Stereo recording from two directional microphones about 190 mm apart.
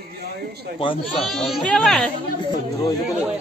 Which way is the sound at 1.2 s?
Centre (ahead or behind).